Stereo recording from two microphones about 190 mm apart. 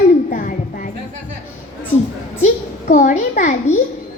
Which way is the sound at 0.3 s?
45° left (ahead or behind).